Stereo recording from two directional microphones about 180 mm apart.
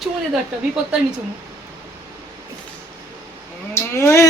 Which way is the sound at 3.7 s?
15° left (ahead or behind).